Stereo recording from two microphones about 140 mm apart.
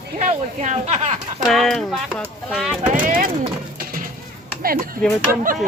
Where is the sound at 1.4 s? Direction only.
Centre (ahead or behind).